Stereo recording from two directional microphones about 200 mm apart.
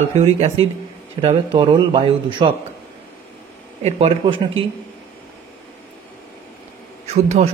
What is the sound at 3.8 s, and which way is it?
Speech, 30° right (ahead or behind).